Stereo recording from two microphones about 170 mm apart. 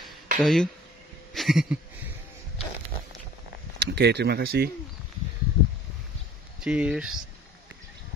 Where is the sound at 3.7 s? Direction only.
85° right; by 4.7 s 65° right (ahead or behind).